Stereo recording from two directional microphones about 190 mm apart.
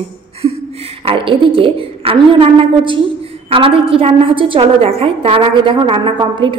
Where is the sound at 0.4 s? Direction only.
20° right (ahead or behind).